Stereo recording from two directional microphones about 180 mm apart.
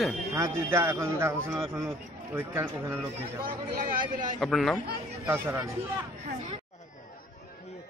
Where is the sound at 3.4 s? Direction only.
50° right (ahead or behind).